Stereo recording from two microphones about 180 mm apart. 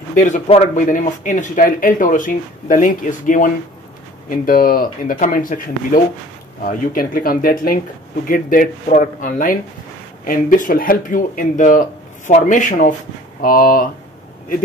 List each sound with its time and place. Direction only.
0.1 s speech: 45° left (ahead or behind)
6.6 s speech: 50° left (ahead or behind)